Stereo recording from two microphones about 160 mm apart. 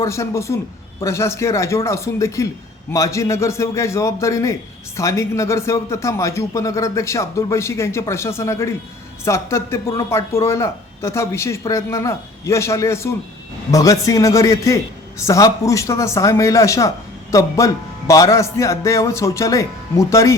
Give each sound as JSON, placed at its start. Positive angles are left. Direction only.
{"t": 0.0, "sound": "a man's voice", "side_deg": 20}